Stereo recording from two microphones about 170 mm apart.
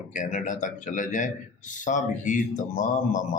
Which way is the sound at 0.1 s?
50° left (ahead or behind).